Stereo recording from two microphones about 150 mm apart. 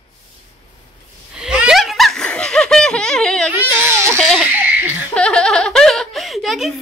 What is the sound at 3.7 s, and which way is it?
Baby cry, 15° right (ahead or behind).